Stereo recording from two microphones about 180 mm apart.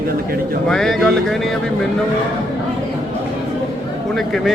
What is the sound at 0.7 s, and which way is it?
Speech, 5° left (ahead or behind).